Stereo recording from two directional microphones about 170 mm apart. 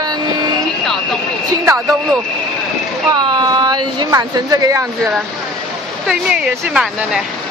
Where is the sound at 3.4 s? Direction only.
20° right (ahead or behind).